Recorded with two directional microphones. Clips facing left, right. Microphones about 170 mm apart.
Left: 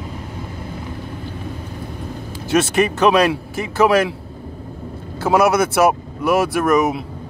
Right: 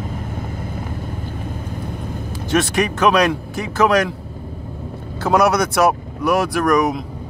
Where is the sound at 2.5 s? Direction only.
5° left (ahead or behind).